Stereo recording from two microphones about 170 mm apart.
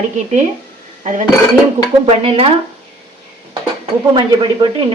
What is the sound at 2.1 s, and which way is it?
Speech, 35° right (ahead or behind).